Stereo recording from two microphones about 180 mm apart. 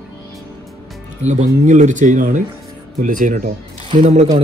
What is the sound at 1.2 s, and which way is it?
Speech, 40° right (ahead or behind).